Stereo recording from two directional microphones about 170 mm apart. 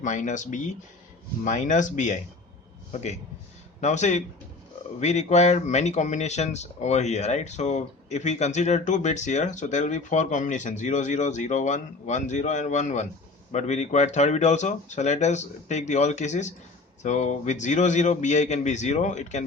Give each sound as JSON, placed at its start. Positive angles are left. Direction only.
{"t": 0.0, "sound": "speech", "side_deg": 45}